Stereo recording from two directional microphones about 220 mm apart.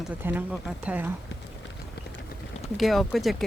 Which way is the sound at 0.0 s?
5° right (ahead or behind).